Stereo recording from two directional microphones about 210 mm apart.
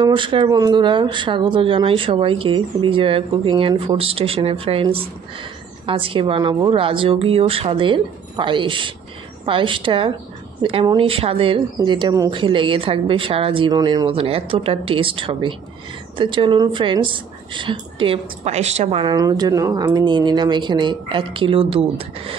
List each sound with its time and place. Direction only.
0.0 s a woman's voice: 25° right (ahead or behind)